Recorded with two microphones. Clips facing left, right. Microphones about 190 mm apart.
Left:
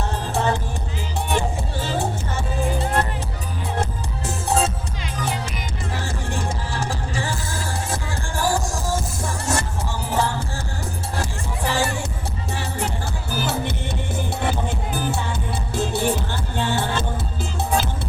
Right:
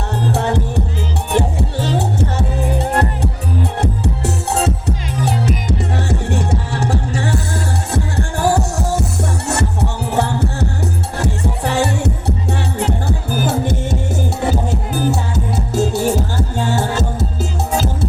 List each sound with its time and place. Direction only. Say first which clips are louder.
0.3 s music: right 1 dB; 65° right (ahead or behind)
6.1 s music: right 9 dB; 65° right (ahead or behind)
12.8 s music: right 7 dB; 55° right (ahead or behind)